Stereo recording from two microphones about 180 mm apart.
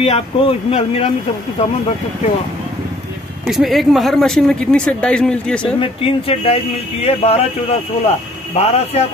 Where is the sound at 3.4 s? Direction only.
Centre (ahead or behind).